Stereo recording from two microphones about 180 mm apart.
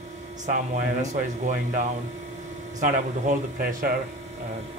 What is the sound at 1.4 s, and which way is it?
A man's voice, 45° right (ahead or behind).